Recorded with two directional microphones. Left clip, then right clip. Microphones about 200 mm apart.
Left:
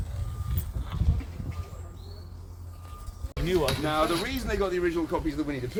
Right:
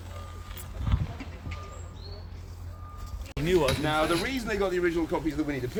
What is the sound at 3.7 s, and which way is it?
Speech, 5° left (ahead or behind).